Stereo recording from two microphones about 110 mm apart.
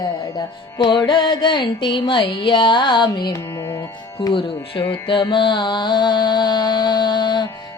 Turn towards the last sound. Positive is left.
turn(degrees=40)  # may be behind; listen again after turning